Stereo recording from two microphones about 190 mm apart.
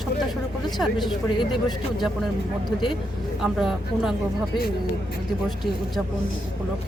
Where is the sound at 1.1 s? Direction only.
25° left (ahead or behind).